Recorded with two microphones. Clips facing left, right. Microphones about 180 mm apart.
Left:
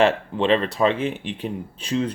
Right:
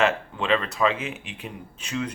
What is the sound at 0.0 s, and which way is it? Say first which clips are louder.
Speech: left 5 dB; 30° left (ahead or behind).